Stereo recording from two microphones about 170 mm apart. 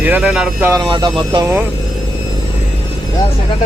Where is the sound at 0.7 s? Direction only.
25° right (ahead or behind).